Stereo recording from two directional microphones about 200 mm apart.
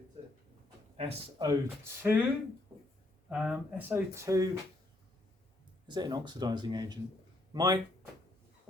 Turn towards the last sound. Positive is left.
turn(degrees=-20)  # may be behind; listen again after turning